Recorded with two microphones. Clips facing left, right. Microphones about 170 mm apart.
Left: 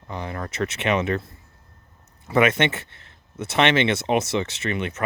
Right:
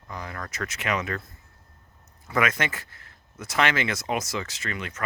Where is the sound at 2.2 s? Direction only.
25° left (ahead or behind).